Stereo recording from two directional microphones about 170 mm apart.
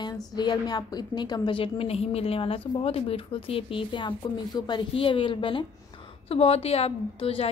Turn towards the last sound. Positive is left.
turn(degrees=35)  # may be behind; listen again after turning